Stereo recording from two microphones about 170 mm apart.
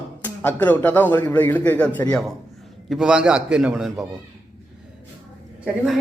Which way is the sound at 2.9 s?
5° right (ahead or behind).